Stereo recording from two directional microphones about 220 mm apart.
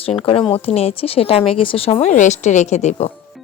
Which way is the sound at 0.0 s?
25° left (ahead or behind).